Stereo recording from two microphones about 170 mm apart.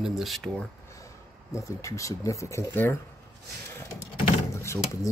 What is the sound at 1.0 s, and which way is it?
Speech, 20° left (ahead or behind).